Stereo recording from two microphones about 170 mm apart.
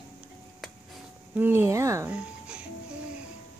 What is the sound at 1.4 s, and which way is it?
Speech, 15° right (ahead or behind).